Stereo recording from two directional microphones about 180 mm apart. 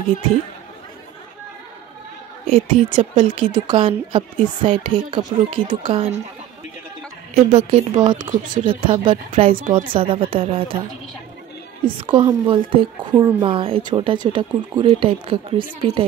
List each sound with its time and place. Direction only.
2.4 s a woman's voice: 30° right (ahead or behind)
7.3 s a woman's voice: 35° right (ahead or behind)